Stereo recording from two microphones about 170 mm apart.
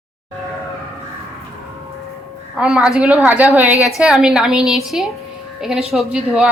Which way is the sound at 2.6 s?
5° right (ahead or behind).